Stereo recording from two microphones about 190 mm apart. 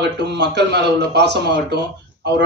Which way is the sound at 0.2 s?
60° right (ahead or behind).